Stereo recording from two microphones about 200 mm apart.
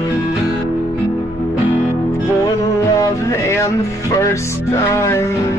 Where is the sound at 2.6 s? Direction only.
15° left (ahead or behind).